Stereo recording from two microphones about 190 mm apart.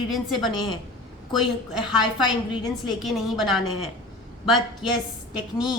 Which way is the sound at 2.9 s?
Centre (ahead or behind).